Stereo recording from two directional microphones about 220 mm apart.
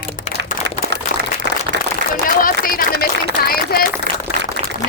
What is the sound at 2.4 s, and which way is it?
Speech, 40° left (ahead or behind).